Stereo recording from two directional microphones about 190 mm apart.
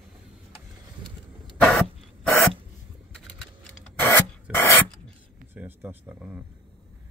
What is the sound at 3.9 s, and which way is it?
Rub, 10° left (ahead or behind).